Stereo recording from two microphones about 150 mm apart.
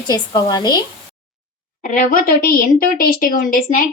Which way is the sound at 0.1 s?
25° left (ahead or behind).